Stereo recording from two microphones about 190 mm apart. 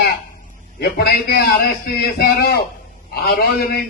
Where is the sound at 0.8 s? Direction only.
55° left (ahead or behind).